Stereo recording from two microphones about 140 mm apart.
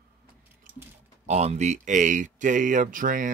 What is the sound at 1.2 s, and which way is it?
Speech, 50° right (ahead or behind).